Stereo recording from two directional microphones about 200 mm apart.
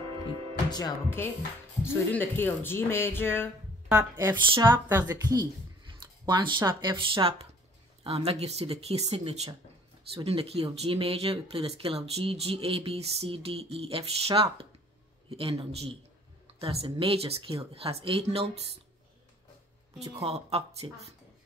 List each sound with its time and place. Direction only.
0.7 s speech: 20° left (ahead or behind)
3.9 s speech: 15° right (ahead or behind); by 18.6 s 30° right (ahead or behind)
20.0 s speech: 30° right (ahead or behind)